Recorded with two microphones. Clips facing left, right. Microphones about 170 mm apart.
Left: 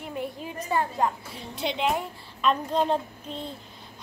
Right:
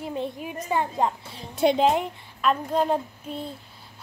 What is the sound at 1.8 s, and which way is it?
Speech, 20° right (ahead or behind).